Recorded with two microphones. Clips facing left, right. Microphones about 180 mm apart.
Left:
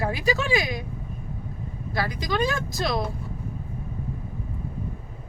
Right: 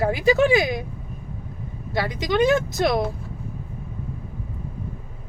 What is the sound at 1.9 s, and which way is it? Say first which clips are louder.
Speech: right 4 dB; 20° right (ahead or behind).